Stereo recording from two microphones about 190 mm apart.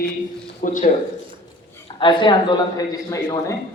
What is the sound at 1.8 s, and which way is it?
Speech, 25° left (ahead or behind).